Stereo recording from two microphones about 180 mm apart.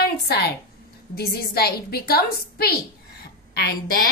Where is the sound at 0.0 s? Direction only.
60° left (ahead or behind).